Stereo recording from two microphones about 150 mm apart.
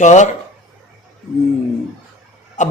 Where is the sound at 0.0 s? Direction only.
50° left (ahead or behind).